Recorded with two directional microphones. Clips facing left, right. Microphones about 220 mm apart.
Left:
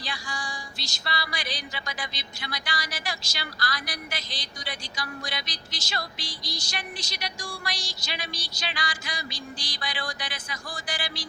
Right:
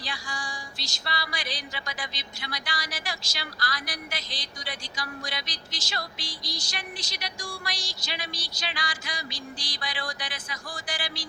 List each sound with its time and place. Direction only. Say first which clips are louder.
0.9 s music: left 1 dB; 65° left (ahead or behind)